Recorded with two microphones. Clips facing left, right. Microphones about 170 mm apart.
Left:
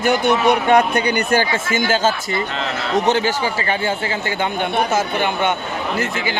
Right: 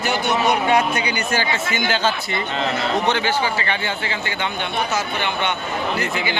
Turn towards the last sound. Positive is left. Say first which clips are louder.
# left 4 dB
turn(degrees=50)  # may be behind; listen again after turning